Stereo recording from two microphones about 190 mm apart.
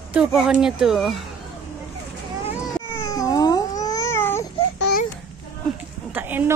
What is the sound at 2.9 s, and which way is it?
Baby cry, 15° left (ahead or behind).